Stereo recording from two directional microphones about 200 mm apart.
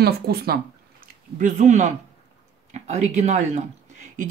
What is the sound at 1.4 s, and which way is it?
Speech, 35° right (ahead or behind).